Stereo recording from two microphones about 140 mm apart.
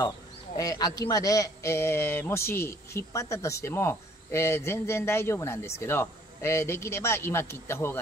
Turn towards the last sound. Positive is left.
turn(degrees=15)  # may be behind; listen again after turning